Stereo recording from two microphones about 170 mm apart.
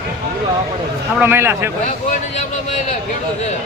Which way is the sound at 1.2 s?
15° right (ahead or behind).